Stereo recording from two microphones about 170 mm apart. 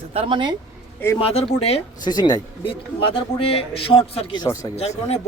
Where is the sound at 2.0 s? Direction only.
25° left (ahead or behind).